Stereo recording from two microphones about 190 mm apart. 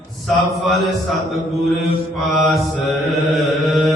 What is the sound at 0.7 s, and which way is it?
Mantra, centre (ahead or behind).